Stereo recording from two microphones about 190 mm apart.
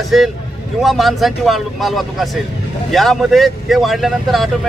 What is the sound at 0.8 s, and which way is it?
Speech, centre (ahead or behind).